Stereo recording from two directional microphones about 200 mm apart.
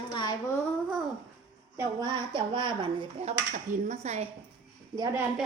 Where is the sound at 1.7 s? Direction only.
15° right (ahead or behind); by 4.3 s 35° right (ahead or behind).